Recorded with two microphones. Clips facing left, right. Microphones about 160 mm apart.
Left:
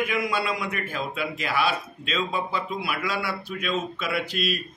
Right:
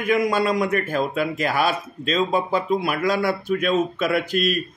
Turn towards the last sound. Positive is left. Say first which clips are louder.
# right 6 dB
turn(degrees=-45)  # may be behind; listen again after turning